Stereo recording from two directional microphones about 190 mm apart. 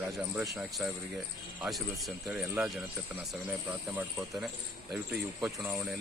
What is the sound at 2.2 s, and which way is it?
Speech, 5° right (ahead or behind).